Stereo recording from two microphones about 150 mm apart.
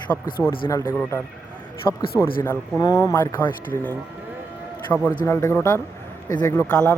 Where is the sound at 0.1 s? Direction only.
15° left (ahead or behind).